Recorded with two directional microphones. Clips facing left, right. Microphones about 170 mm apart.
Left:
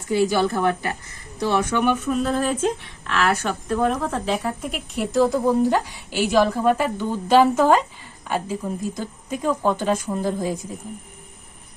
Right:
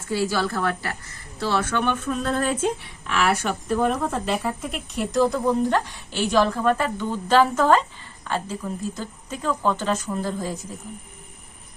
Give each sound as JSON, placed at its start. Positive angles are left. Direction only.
{"t": 0.1, "sound": "a woman's voice", "side_deg": 20}